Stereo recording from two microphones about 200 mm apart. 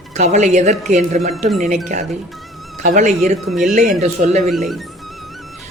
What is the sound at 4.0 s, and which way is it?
Speech, 35° right (ahead or behind).